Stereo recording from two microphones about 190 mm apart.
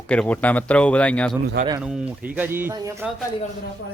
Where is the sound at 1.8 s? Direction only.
5° right (ahead or behind).